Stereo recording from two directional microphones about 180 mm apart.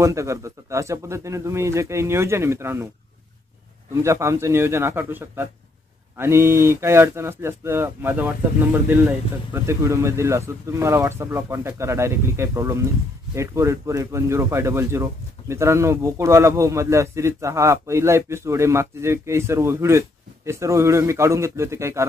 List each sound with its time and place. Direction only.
0.0 s speech: 15° right (ahead or behind)
3.9 s speech: 15° right (ahead or behind)